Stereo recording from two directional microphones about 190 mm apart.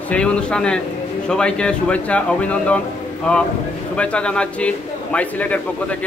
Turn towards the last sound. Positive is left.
turn(degrees=5)  # may be behind; listen again after turning